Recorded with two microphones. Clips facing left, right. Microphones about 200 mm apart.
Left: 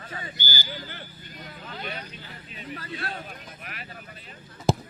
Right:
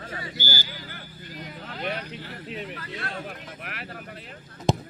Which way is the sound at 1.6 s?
70° right (ahead or behind).